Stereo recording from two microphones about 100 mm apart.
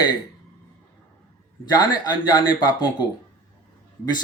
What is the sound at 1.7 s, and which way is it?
Speech, 45° left (ahead or behind).